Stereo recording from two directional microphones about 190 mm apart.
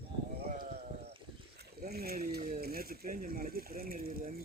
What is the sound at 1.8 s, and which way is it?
Speech, 55° right (ahead or behind).